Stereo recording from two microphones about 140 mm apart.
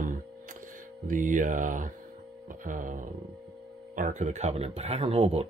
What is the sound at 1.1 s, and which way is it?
Mantra, 70° right (ahead or behind).